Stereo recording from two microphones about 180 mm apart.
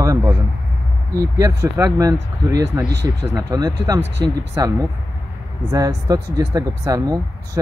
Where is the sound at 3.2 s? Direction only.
20° right (ahead or behind).